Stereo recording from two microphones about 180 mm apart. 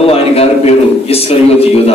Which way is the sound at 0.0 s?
35° left (ahead or behind).